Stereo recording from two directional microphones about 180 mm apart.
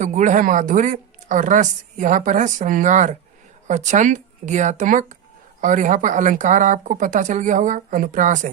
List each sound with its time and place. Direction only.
0.0 s speech: 45° right (ahead or behind)